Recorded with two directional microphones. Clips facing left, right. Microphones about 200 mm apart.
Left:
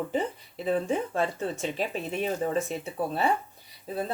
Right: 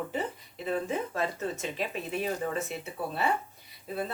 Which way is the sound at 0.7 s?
30° left (ahead or behind).